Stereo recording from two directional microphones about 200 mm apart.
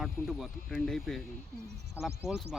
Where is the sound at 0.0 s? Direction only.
Centre (ahead or behind).